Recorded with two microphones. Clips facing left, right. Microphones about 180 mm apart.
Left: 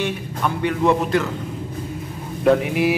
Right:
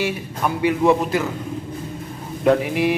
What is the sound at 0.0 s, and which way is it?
Speech, 5° right (ahead or behind).